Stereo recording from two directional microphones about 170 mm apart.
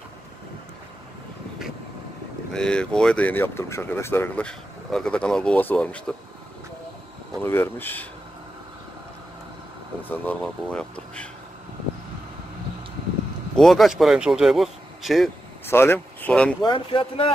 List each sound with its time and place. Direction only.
2.5 s speech: 5° left (ahead or behind)
7.4 s speech: 15° left (ahead or behind)
10.0 s speech: 10° left (ahead or behind)
13.6 s speech: centre (ahead or behind)
15.6 s speech: 15° left (ahead or behind)
16.6 s speech: 30° left (ahead or behind)